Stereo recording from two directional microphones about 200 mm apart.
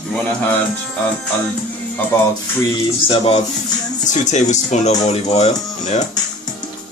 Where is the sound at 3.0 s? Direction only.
30° left (ahead or behind).